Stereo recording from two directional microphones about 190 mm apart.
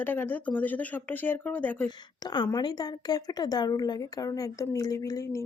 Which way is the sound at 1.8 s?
20° left (ahead or behind).